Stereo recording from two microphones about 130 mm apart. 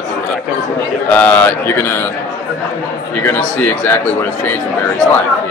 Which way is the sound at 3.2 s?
15° left (ahead or behind).